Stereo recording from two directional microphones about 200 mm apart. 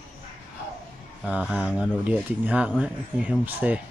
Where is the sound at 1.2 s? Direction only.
5° right (ahead or behind).